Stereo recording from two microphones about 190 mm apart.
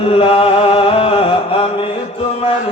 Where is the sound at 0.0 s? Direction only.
30° left (ahead or behind).